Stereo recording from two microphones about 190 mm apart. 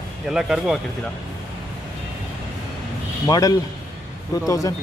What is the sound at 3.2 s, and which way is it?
A man's voice, 20° left (ahead or behind).